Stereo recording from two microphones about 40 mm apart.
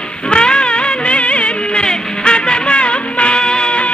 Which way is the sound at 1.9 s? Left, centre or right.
Left.